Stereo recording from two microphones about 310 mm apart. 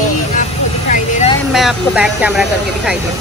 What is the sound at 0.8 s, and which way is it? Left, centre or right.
Vehicle, left.